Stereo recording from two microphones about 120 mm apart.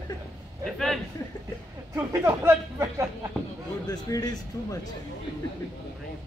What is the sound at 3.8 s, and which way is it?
Speech, 30° left (ahead or behind).